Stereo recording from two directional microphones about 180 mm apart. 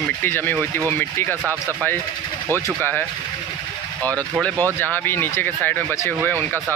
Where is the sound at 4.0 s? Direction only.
20° right (ahead or behind).